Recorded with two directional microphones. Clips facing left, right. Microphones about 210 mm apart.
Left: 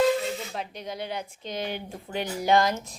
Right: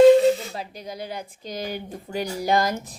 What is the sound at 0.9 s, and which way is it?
Speech, 40° right (ahead or behind).